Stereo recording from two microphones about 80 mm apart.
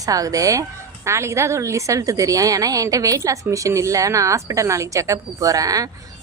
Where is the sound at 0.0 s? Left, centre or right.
Right.